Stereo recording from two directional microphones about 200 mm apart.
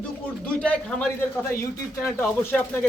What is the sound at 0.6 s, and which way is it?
A man's voice, 5° left (ahead or behind).